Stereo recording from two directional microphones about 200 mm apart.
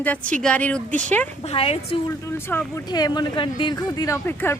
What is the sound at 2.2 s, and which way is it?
Speech, 10° left (ahead or behind).